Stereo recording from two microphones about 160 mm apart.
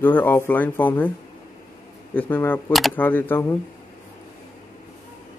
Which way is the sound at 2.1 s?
10° left (ahead or behind).